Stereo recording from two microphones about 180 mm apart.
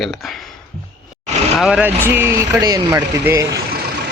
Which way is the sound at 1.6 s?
5° right (ahead or behind).